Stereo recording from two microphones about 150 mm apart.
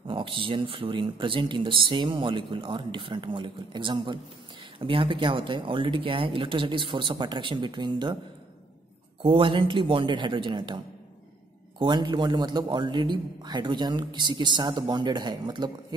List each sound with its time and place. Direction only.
0.0 s speech: 35° right (ahead or behind)
9.2 s speech: 35° right (ahead or behind)
11.8 s a man's voice: 30° right (ahead or behind)